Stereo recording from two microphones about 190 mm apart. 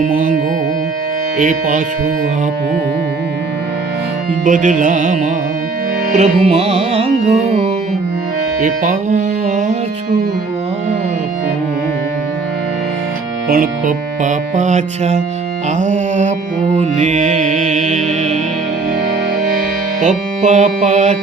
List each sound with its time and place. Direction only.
0.0 s carnatic music: 45° right (ahead or behind)
1.4 s carnatic music: 45° right (ahead or behind)
4.4 s carnatic music: 45° right (ahead or behind)
6.1 s speech: 30° right (ahead or behind)
8.6 s music: 45° right (ahead or behind)
13.5 s speech: 45° right (ahead or behind)
20.0 s speech: 40° right (ahead or behind)